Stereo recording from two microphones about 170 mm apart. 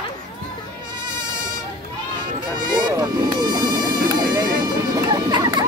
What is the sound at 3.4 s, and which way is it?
Insect, 25° right (ahead or behind).